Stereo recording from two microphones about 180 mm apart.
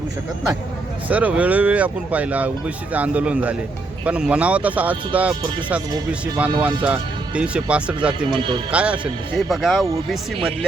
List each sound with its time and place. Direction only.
1.0 s speech: 10° right (ahead or behind)
8.3 s speech: 25° right (ahead or behind)
8.7 s speech: 5° right (ahead or behind)